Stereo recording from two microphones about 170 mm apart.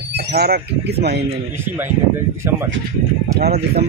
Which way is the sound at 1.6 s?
15° right (ahead or behind).